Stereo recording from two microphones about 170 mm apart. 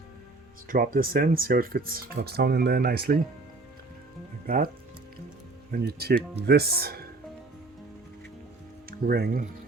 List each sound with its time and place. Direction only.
0.7 s speech: 55° right (ahead or behind)
4.4 s speech: 60° right (ahead or behind)
5.7 s speech: 65° right (ahead or behind)
8.9 s speech: 65° right (ahead or behind)